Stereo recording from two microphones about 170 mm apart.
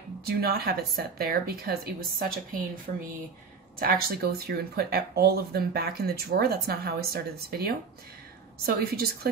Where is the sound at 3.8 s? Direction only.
60° right (ahead or behind).